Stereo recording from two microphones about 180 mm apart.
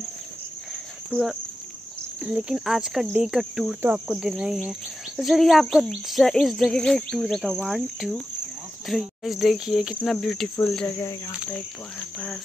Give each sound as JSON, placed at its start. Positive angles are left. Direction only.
{"t": 1.1, "sound": "speech", "side_deg": 0}
{"t": 11.0, "sound": "speech", "side_deg": 20}